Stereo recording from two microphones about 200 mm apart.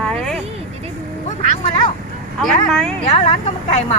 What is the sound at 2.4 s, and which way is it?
Speech, centre (ahead or behind).